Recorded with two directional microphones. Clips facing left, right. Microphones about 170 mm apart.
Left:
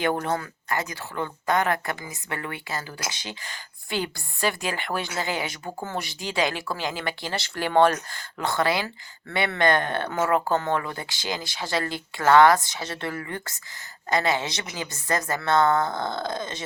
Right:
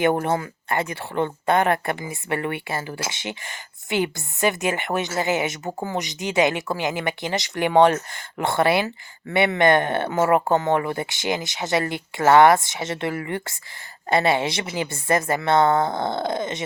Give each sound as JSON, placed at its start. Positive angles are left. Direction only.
{"t": 0.0, "sound": "speech", "side_deg": -20}